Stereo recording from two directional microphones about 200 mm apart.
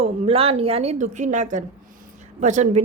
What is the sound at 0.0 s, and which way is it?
Speech, 30° right (ahead or behind).